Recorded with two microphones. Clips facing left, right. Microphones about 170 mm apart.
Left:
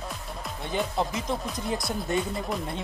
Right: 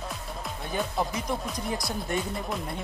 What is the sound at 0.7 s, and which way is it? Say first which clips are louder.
Speech: left 1 dB; centre (ahead or behind).